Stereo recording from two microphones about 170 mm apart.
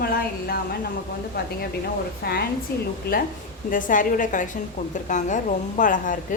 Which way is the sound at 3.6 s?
50° left (ahead or behind).